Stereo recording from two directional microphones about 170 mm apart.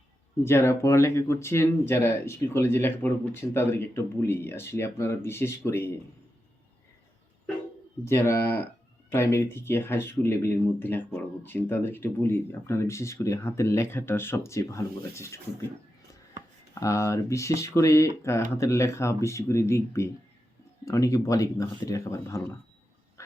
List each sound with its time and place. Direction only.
0.4 s speech: 15° left (ahead or behind)
8.0 s speech: 15° left (ahead or behind)
16.8 s speech: 20° left (ahead or behind)